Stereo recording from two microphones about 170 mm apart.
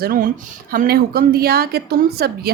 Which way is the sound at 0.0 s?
55° right (ahead or behind).